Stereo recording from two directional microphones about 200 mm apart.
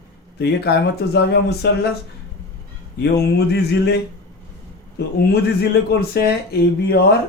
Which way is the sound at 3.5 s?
55° left (ahead or behind).